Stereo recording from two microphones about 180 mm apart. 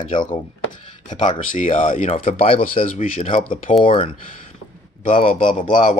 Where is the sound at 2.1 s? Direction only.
30° left (ahead or behind).